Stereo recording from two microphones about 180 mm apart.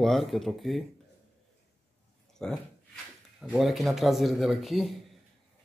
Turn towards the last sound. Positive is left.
turn(degrees=0)  # may be behind; listen again after turning